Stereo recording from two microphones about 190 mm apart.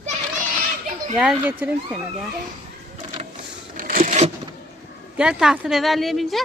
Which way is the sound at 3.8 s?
50° right (ahead or behind).